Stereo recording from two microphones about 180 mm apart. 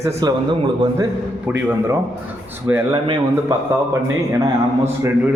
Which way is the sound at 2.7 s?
20° right (ahead or behind).